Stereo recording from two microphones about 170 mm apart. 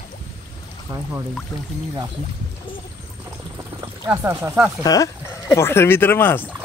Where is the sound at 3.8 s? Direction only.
15° right (ahead or behind).